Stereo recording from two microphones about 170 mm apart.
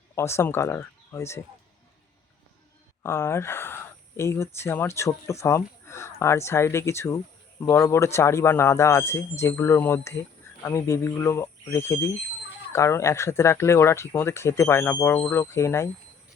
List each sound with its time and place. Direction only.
0.2 s speech: 15° left (ahead or behind)
3.0 s speech: 15° left (ahead or behind)